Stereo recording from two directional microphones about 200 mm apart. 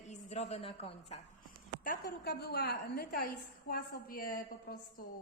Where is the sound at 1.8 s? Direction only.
45° left (ahead or behind).